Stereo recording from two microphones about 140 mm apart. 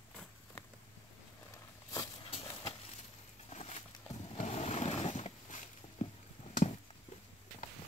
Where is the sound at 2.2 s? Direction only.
40° left (ahead or behind).